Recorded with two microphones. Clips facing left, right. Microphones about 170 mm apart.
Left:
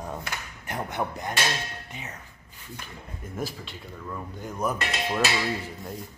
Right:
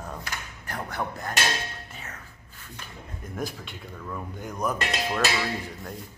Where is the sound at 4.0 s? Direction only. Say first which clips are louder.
Right 1 dB; centre (ahead or behind).